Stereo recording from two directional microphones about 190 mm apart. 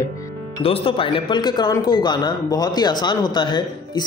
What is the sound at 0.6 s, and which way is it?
Speech, 25° left (ahead or behind).